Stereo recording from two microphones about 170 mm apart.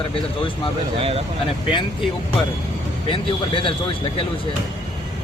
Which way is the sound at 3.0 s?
30° left (ahead or behind).